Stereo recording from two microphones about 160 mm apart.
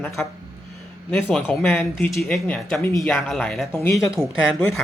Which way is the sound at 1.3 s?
10° left (ahead or behind).